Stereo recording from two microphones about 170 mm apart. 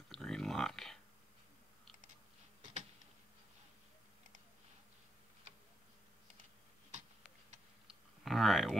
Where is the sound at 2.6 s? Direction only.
45° right (ahead or behind).